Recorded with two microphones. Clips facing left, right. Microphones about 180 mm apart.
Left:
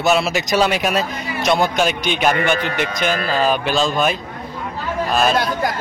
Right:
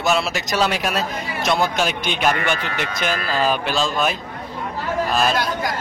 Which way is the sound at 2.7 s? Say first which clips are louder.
Left 3 dB; 45° left (ahead or behind).